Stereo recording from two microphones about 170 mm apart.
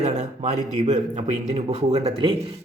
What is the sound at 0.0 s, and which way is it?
Speech, 40° right (ahead or behind).